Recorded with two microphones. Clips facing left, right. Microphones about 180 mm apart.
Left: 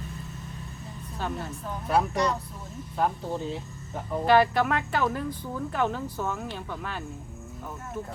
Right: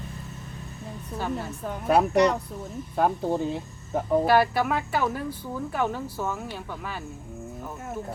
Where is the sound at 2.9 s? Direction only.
50° right (ahead or behind).